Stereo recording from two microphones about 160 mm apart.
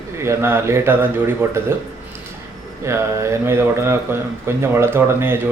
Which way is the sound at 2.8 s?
15° right (ahead or behind).